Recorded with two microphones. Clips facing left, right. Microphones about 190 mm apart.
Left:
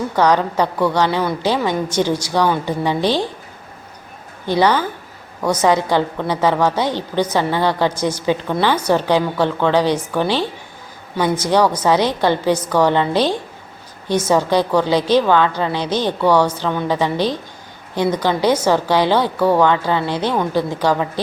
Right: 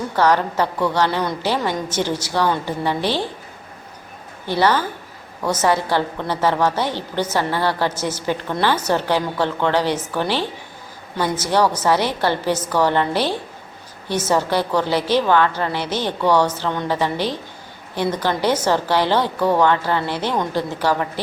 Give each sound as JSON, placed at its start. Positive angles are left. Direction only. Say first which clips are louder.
{"t": 0.2, "sound": "a woman's voice", "louder": "left 2 dB", "side_deg": 15}
{"t": 4.4, "sound": "a woman's voice", "louder": "left 2 dB", "side_deg": 15}
{"t": 11.2, "sound": "a woman's voice", "louder": "left 3 dB", "side_deg": 15}